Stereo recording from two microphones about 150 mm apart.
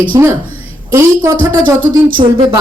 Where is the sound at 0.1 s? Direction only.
25° right (ahead or behind).